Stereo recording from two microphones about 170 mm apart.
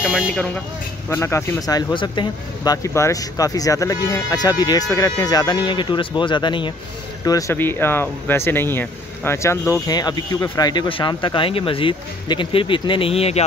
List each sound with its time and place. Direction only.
0.0 s speech: 5° right (ahead or behind)
1.1 s speech: 15° left (ahead or behind); by 13.4 s 35° left (ahead or behind)